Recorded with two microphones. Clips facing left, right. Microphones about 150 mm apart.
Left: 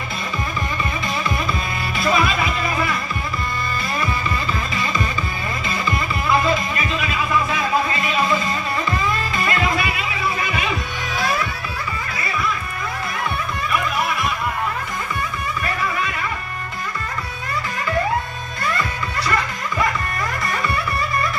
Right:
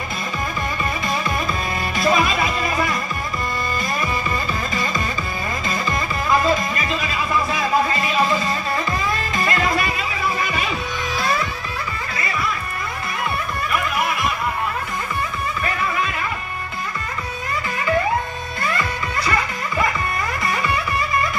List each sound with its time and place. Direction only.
2.0 s music: 40° right (ahead or behind)
9.3 s music: 40° right (ahead or behind)